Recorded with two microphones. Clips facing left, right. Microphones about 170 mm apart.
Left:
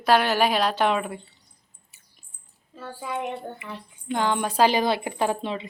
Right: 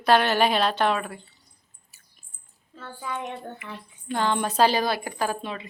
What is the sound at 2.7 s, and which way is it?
A woman's voice, 10° left (ahead or behind).